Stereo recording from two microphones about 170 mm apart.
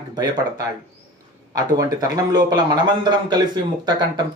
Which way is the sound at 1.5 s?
20° right (ahead or behind).